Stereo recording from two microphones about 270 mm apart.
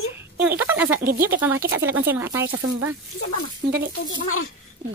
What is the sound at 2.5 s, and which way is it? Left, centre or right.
Speech, right.